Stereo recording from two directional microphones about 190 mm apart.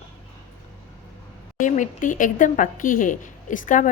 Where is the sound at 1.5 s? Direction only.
40° left (ahead or behind).